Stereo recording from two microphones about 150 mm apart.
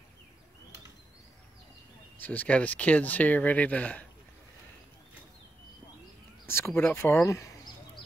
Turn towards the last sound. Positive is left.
turn(degrees=20)  # may be behind; listen again after turning